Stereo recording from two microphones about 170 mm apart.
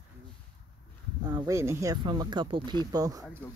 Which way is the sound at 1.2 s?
20° right (ahead or behind).